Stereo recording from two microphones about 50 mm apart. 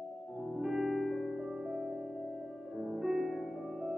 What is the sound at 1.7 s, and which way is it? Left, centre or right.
Music, centre.